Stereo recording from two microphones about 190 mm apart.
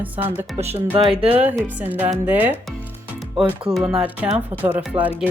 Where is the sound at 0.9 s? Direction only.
30° right (ahead or behind).